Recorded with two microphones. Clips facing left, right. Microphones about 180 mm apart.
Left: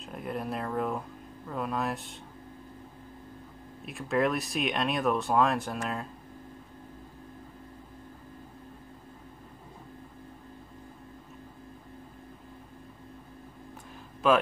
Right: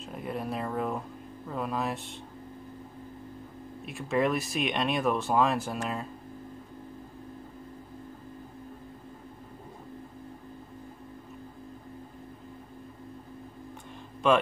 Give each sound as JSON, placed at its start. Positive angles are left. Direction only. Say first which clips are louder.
{"t": 0.0, "sound": "speech", "louder": "even", "side_deg": 0}
{"t": 3.8, "sound": "speech", "louder": "even", "side_deg": 0}
{"t": 14.2, "sound": "speech", "louder": "even", "side_deg": 5}